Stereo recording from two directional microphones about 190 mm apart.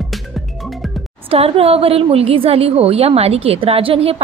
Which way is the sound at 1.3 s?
30° right (ahead or behind).